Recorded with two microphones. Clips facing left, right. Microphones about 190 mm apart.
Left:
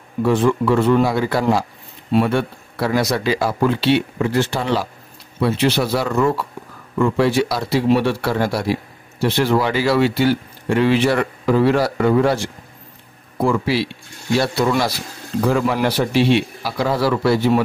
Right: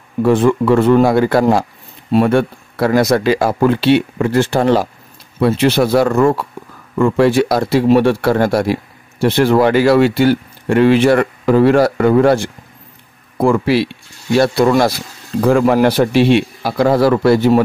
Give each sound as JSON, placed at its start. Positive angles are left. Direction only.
{"t": 0.2, "sound": "speech", "side_deg": -50}
{"t": 13.4, "sound": "speech", "side_deg": -55}